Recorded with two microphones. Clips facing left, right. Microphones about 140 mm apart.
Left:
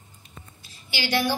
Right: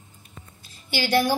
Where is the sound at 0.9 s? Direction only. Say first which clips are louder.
Right 4 dB; 45° right (ahead or behind).